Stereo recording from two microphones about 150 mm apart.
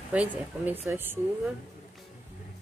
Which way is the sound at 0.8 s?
15° right (ahead or behind).